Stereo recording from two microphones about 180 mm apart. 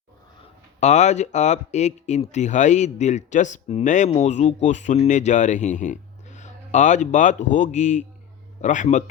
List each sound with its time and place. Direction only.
0.8 s speech: 40° left (ahead or behind)